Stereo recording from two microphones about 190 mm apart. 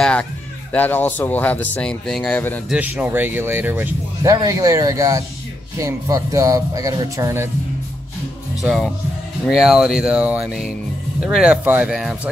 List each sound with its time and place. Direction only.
0.0 s music: 5° left (ahead or behind)
0.7 s speech: 10° left (ahead or behind)
2.7 s speech: 10° right (ahead or behind)
8.6 s speech: centre (ahead or behind)